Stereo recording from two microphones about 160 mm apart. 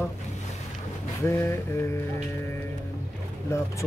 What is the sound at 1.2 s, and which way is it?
Speech, 15° left (ahead or behind).